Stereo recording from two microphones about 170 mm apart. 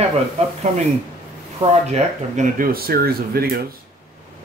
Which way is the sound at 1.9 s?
50° right (ahead or behind).